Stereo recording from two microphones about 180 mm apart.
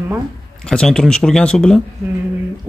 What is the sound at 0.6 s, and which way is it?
Speech, 5° left (ahead or behind).